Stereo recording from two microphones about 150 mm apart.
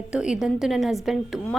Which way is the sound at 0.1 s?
5° right (ahead or behind).